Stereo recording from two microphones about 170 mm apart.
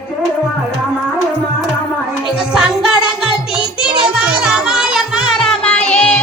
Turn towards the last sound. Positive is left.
turn(degrees=5)  # may be behind; listen again after turning